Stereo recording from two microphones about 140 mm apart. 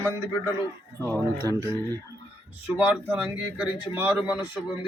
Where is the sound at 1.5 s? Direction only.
20° right (ahead or behind).